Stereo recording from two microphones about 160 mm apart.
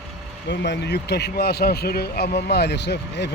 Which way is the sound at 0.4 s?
90° left.